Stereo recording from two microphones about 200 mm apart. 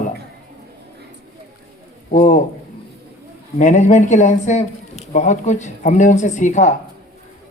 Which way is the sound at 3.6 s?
40° left (ahead or behind).